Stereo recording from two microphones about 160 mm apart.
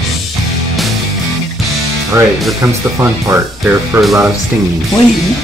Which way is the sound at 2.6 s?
15° right (ahead or behind).